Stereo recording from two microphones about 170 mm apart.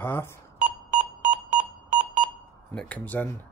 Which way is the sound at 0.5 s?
45° right (ahead or behind).